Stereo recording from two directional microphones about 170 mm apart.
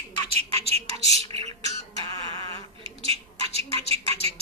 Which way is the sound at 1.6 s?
20° left (ahead or behind).